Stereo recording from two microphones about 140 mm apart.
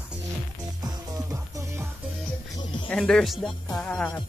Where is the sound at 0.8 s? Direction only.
30° right (ahead or behind).